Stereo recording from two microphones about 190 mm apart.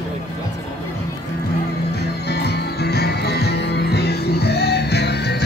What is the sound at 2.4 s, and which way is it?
Music, 60° left (ahead or behind).